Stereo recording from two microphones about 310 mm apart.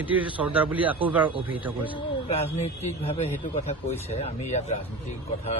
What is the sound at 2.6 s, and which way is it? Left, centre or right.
Speech, left.